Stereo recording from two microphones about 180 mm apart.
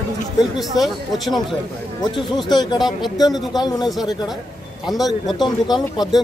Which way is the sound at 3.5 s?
20° left (ahead or behind).